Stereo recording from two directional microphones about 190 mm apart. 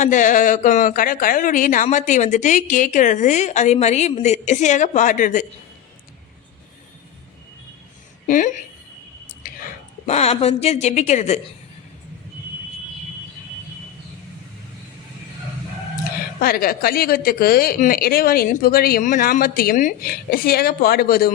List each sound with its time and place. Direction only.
0.0 s a woman's voice: 40° left (ahead or behind)
8.3 s a woman's voice: 45° left (ahead or behind)
10.1 s a woman's voice: 35° left (ahead or behind)
16.4 s a woman's voice: 50° left (ahead or behind)